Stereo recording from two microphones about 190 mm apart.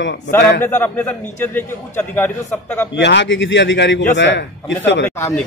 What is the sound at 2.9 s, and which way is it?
A man's voice, 70° left (ahead or behind).